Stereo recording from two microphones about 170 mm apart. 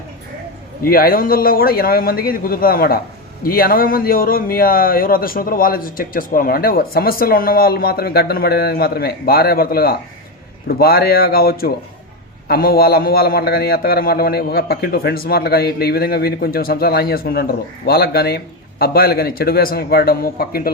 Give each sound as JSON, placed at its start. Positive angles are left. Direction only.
{"t": 0.8, "sound": "a man's voice", "side_deg": 60}